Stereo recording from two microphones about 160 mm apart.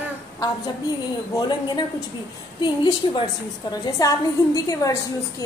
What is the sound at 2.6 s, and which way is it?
A woman's voice, 30° left (ahead or behind).